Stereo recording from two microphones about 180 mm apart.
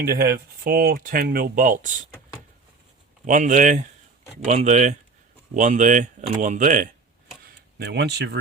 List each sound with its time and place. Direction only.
0.0 s speech: 55° right (ahead or behind)
3.2 s speech: 45° right (ahead or behind)
7.4 s a sound: 65° right (ahead or behind)